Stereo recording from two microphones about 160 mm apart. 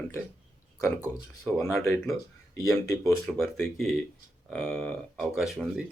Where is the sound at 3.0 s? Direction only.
Centre (ahead or behind).